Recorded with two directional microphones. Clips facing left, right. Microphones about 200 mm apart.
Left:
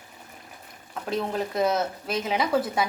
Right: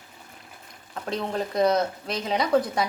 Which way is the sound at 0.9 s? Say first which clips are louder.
Left 1 dB; 5° left (ahead or behind).